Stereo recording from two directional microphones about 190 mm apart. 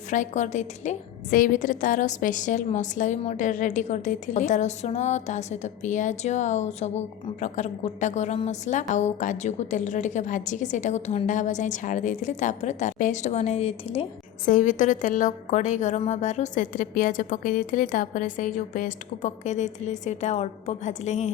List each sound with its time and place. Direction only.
0.1 s a woman's voice: 40° left (ahead or behind)
14.4 s a woman's voice: 40° left (ahead or behind)